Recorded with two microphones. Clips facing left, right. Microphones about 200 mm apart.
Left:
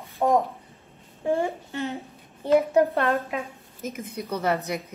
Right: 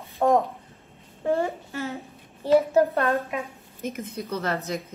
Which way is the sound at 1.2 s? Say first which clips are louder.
Even; 15° left (ahead or behind).